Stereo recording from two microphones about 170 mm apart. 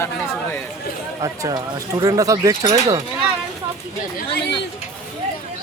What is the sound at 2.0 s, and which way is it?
Speech, 20° right (ahead or behind).